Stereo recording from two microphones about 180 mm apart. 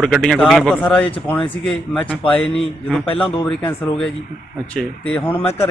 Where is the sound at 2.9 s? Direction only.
5° left (ahead or behind).